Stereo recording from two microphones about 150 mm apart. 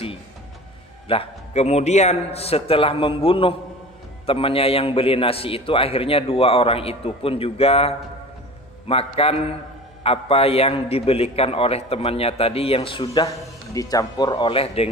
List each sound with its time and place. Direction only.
1.0 s a man's voice: 40° left (ahead or behind)